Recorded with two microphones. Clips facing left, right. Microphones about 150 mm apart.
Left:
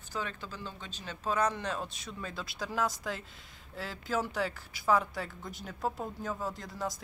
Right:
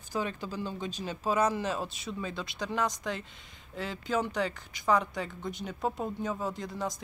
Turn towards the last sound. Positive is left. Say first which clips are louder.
# right 3 dB
turn(degrees=0)  # may be behind; listen again after turning